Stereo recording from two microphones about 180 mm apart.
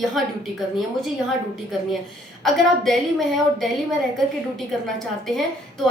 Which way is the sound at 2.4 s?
Centre (ahead or behind).